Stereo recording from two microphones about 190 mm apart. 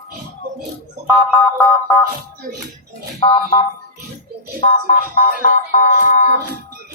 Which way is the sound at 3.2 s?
30° left (ahead or behind).